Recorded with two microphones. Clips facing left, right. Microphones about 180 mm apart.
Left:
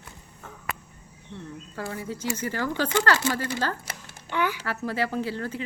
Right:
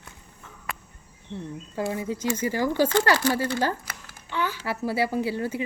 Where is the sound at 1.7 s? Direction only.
20° right (ahead or behind).